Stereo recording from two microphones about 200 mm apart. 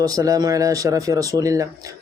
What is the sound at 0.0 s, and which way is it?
Speech, 15° right (ahead or behind).